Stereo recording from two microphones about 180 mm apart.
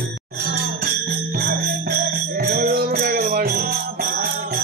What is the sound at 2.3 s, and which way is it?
Music, 60° right (ahead or behind).